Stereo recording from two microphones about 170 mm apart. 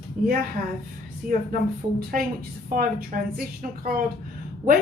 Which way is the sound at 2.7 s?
55° right (ahead or behind).